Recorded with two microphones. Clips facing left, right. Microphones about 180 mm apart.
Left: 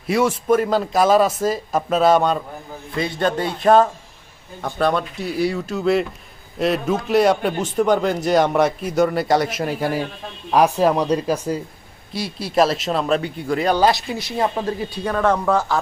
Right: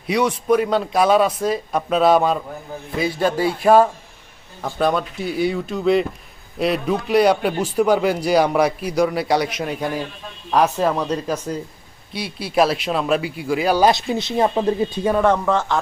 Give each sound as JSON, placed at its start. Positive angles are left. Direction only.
{"t": 0.1, "sound": "speech", "side_deg": 5}
{"t": 12.1, "sound": "speech", "side_deg": 0}
{"t": 13.8, "sound": "speech", "side_deg": -20}
{"t": 15.2, "sound": "speech", "side_deg": 0}